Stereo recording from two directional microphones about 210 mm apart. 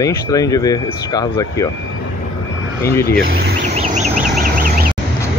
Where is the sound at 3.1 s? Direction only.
45° right (ahead or behind).